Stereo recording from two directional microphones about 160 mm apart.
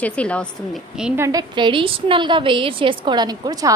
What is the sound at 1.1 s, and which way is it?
A woman's voice, 20° right (ahead or behind).